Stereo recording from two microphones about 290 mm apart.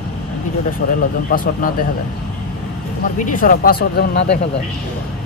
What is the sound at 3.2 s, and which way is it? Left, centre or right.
Speech, left.